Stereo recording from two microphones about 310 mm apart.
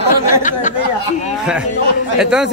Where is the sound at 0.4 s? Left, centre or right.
Left.